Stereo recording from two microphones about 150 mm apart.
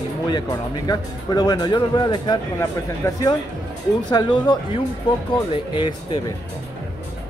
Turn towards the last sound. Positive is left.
turn(degrees=30)  # may be behind; listen again after turning